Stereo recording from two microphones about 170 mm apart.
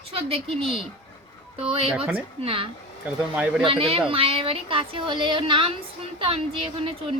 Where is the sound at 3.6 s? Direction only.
30° right (ahead or behind).